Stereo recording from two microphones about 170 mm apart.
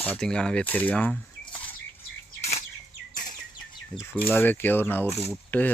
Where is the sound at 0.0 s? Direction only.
5° left (ahead or behind).